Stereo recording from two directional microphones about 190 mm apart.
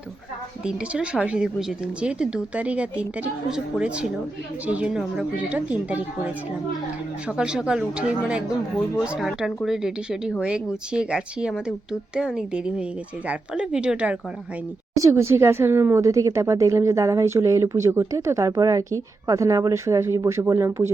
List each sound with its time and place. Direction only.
0.6 s speech: 5° right (ahead or behind)